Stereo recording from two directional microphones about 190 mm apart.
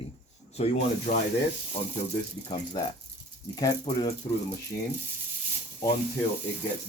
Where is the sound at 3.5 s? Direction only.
20° left (ahead or behind).